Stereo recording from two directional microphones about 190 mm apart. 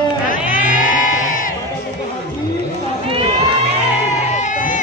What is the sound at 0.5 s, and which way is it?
Sheep, 45° left (ahead or behind).